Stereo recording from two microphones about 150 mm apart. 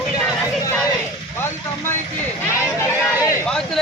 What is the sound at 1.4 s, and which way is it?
Speech, 15° left (ahead or behind).